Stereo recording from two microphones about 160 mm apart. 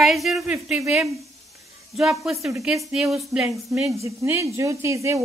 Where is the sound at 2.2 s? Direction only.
Centre (ahead or behind).